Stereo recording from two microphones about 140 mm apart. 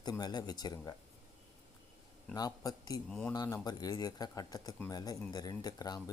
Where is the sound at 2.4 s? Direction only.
30° left (ahead or behind).